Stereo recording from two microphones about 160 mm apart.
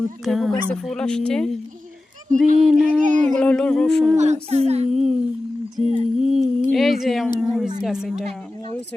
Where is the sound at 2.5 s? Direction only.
50° right (ahead or behind).